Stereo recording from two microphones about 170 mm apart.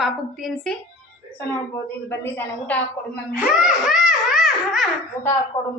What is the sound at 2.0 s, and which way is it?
Speech, 10° left (ahead or behind).